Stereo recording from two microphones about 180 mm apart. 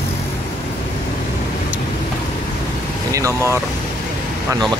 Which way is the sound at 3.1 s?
15° right (ahead or behind).